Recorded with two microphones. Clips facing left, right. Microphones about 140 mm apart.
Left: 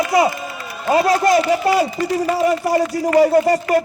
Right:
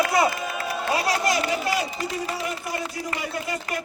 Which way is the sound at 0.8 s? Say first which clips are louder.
Left 10 dB; 45° left (ahead or behind).